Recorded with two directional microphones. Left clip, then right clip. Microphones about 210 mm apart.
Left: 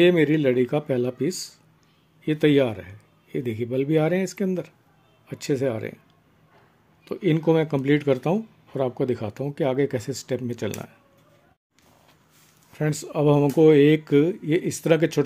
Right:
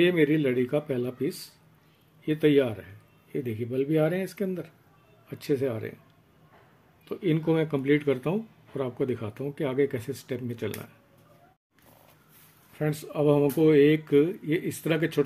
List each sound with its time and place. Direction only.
0.0 s speech: 50° left (ahead or behind)
7.1 s speech: 50° left (ahead or behind)
12.7 s speech: 50° left (ahead or behind)